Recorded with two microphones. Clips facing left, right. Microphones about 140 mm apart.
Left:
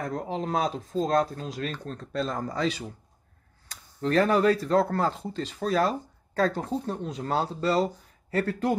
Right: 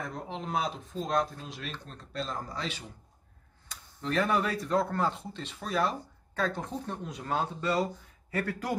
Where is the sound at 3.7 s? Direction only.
40° left (ahead or behind).